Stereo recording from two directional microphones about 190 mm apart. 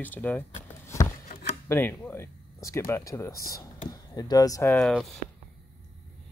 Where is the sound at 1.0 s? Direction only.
35° left (ahead or behind).